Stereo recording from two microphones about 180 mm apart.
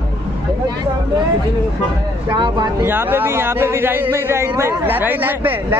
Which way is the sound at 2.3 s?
25° right (ahead or behind).